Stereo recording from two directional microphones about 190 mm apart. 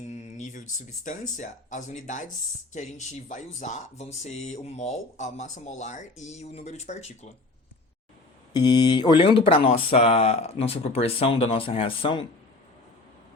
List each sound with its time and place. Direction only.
0.1 s a sound: 40° left (ahead or behind)
1.0 s speech: 40° left (ahead or behind)
8.5 s speech: 20° left (ahead or behind)